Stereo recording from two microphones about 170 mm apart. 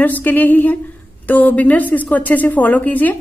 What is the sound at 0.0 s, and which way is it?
A woman's voice, 10° left (ahead or behind).